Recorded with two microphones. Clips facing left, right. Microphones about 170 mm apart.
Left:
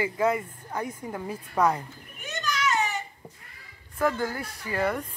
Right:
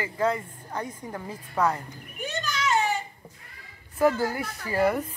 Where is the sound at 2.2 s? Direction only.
30° right (ahead or behind).